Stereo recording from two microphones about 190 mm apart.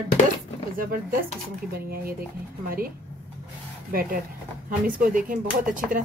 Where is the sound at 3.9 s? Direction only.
50° right (ahead or behind).